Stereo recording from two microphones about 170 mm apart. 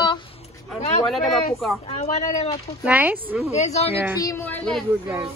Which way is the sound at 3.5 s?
40° left (ahead or behind).